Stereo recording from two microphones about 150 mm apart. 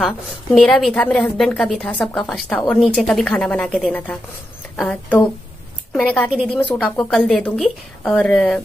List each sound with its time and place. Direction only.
0.0 s a woman's voice: centre (ahead or behind)